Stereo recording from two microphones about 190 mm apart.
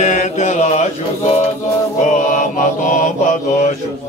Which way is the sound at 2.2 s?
40° left (ahead or behind).